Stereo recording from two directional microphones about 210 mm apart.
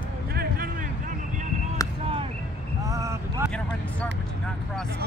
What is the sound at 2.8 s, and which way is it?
Vehicle, 15° right (ahead or behind).